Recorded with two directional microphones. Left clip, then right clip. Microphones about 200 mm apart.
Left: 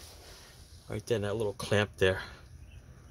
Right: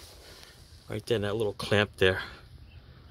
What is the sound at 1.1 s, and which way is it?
Speech, 10° right (ahead or behind).